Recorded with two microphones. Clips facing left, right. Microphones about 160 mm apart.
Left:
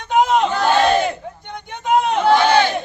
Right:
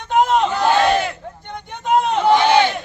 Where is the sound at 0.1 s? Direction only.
Centre (ahead or behind).